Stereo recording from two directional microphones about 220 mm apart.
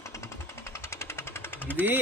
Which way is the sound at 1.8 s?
10° right (ahead or behind).